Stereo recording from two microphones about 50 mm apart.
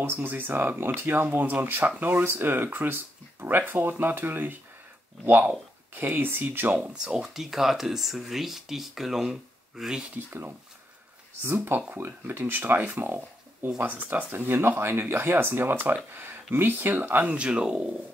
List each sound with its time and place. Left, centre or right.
0.0 s speech: right
5.9 s speech: right
7.1 s speech: centre
11.4 s speech: right
13.7 s speech: right
17.3 s speech: right